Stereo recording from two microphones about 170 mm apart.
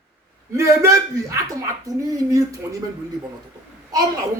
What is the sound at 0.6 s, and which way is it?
Speech, 20° right (ahead or behind).